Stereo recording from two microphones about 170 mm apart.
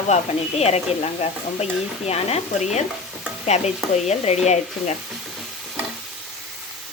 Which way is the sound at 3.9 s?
40° left (ahead or behind).